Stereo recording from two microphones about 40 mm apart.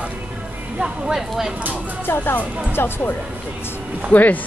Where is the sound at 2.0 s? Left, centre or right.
Left.